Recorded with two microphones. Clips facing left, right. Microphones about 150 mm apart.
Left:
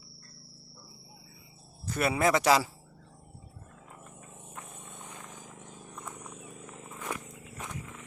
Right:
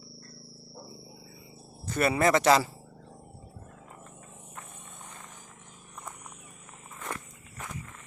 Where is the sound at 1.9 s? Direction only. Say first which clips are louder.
Right 2 dB; 5° left (ahead or behind).